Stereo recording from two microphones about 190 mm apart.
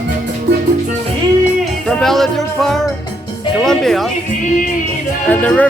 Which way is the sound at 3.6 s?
Centre (ahead or behind).